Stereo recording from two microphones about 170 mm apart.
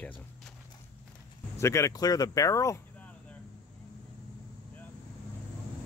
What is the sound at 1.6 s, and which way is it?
Speech, 15° left (ahead or behind).